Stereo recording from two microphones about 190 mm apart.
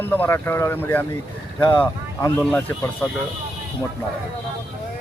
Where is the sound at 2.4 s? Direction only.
5° left (ahead or behind).